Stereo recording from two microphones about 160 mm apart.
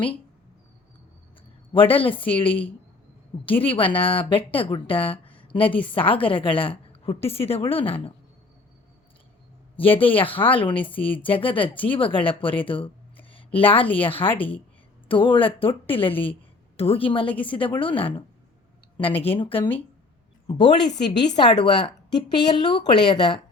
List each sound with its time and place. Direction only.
1.7 s a woman's voice: 35° left (ahead or behind)
10.0 s a woman's voice: 35° left (ahead or behind)
13.3 s a sound: 35° left (ahead or behind)
13.9 s a woman's voice: 35° left (ahead or behind)
19.2 s a woman's voice: 35° left (ahead or behind)